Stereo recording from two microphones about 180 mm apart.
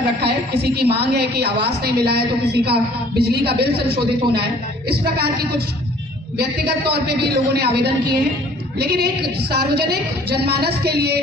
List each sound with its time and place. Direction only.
0.0 s a woman's voice: 65° right (ahead or behind)